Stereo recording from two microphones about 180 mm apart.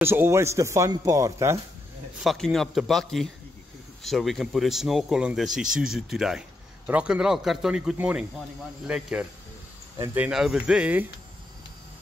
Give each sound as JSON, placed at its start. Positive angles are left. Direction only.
{"t": 0.0, "sound": "a man's voice", "side_deg": -15}
{"t": 2.2, "sound": "a man's voice", "side_deg": 0}